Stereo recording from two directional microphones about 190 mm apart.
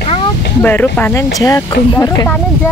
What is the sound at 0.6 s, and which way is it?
Speech, 10° left (ahead or behind).